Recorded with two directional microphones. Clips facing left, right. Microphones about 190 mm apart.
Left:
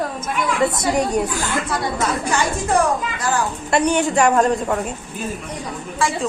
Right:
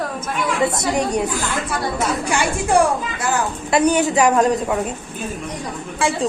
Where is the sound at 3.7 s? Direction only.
5° right (ahead or behind).